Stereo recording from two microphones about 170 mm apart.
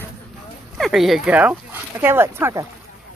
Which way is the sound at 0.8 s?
Centre (ahead or behind).